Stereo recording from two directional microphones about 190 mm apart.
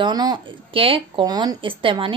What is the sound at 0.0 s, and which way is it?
Speech, 20° right (ahead or behind).